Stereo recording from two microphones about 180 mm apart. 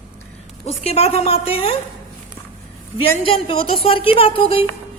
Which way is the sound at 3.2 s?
30° left (ahead or behind).